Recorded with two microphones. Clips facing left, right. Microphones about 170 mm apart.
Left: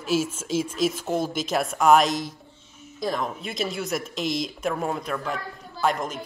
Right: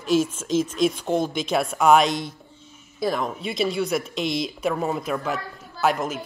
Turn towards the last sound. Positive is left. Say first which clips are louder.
# right 2 dB
turn(degrees=-5)  # may be behind; listen again after turning